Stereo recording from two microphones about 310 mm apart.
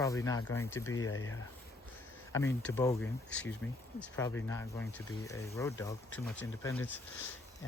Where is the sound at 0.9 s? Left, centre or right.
Left.